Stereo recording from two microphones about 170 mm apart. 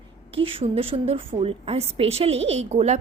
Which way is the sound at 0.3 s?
35° right (ahead or behind).